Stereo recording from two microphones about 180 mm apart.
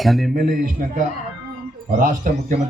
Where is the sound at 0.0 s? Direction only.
Centre (ahead or behind).